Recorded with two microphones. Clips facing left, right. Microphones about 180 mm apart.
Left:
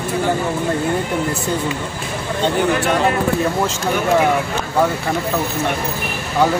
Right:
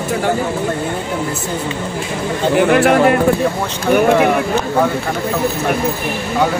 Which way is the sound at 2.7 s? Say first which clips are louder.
Right 6 dB; 75° right (ahead or behind).